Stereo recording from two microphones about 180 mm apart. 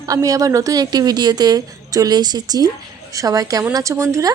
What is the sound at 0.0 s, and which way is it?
Speech, 20° right (ahead or behind).